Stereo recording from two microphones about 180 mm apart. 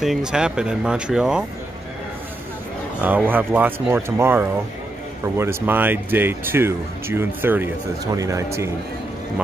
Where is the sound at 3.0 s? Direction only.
10° right (ahead or behind).